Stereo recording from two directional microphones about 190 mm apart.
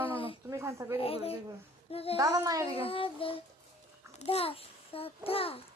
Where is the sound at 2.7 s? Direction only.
30° left (ahead or behind).